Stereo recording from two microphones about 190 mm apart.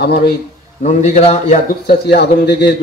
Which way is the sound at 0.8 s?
35° left (ahead or behind).